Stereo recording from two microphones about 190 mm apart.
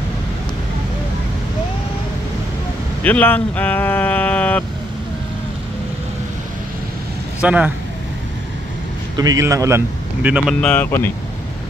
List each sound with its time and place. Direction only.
3.0 s speech: 10° left (ahead or behind)
7.4 s speech: 5° right (ahead or behind)
9.1 s a man's voice: 20° right (ahead or behind)
10.6 s speech: 10° left (ahead or behind)